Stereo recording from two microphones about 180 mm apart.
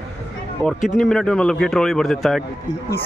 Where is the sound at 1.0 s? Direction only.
5° left (ahead or behind).